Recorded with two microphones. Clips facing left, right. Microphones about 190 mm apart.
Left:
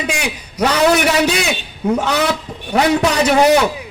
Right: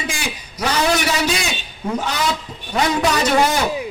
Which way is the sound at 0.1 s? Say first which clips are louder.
Left 5 dB; 65° left (ahead or behind).